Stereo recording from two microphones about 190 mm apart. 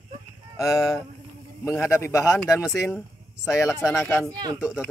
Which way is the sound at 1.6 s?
15° left (ahead or behind).